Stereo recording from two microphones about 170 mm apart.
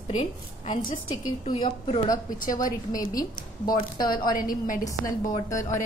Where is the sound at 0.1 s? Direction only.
45° left (ahead or behind).